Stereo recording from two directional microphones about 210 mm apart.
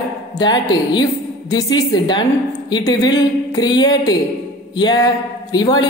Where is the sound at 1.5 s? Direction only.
20° left (ahead or behind).